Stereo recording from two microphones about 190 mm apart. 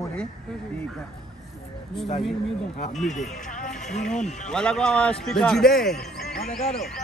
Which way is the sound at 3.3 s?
40° left (ahead or behind).